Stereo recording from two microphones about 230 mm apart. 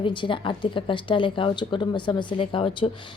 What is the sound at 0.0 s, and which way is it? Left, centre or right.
A woman's voice, left.